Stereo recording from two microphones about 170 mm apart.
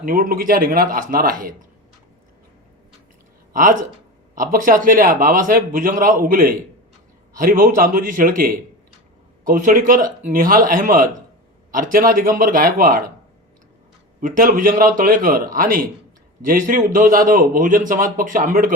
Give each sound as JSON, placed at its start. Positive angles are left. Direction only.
{"t": 0.0, "sound": "speech", "side_deg": -55}
{"t": 3.5, "sound": "a man's voice", "side_deg": -50}
{"t": 14.2, "sound": "a man's voice", "side_deg": -55}